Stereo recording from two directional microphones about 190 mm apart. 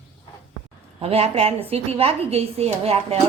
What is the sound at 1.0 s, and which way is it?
A woman's voice, 30° right (ahead or behind).